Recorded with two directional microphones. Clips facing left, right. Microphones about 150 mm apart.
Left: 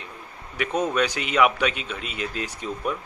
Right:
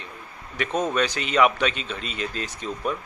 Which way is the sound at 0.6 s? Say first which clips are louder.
Even; 10° left (ahead or behind).